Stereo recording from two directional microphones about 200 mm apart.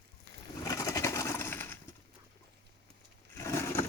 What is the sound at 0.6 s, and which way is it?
Pigeon, 15° left (ahead or behind).